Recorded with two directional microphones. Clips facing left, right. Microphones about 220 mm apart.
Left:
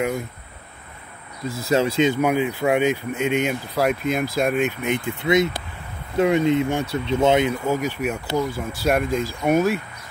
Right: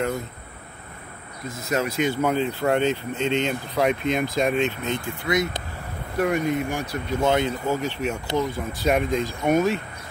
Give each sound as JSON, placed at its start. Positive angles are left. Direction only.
{"t": 1.5, "sound": "speech", "side_deg": 30}
{"t": 2.2, "sound": "speech", "side_deg": 10}